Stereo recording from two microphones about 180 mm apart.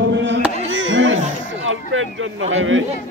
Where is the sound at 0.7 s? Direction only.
90° right.